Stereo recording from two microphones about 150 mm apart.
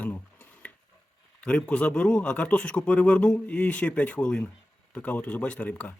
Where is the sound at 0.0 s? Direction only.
10° left (ahead or behind).